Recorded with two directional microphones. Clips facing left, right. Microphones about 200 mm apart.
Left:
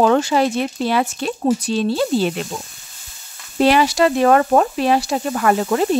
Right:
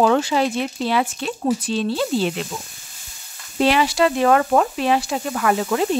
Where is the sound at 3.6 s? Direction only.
45° left (ahead or behind).